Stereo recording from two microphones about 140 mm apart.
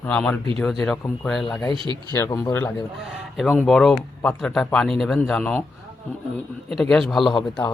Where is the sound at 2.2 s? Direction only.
25° left (ahead or behind).